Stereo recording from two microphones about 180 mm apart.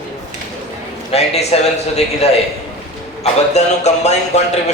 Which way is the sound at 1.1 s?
35° left (ahead or behind).